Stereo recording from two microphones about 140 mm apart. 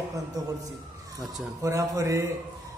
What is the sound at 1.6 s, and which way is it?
Speech, 20° right (ahead or behind).